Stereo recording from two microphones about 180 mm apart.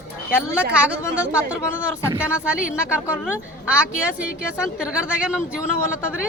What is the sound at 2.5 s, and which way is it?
Speech, 5° right (ahead or behind).